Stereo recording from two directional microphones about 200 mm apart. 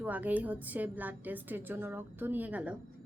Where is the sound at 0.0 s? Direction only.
10° right (ahead or behind).